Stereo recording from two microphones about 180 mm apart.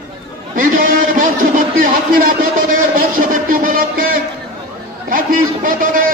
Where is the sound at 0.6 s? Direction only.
50° right (ahead or behind).